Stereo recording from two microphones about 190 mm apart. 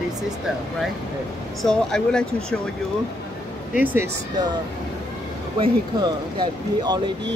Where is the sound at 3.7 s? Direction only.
10° right (ahead or behind).